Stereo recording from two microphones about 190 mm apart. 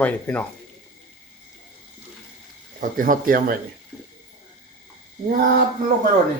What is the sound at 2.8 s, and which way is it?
Speech, 45° right (ahead or behind).